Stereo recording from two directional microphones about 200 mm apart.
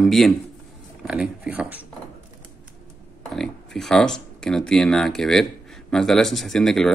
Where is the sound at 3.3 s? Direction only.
Centre (ahead or behind).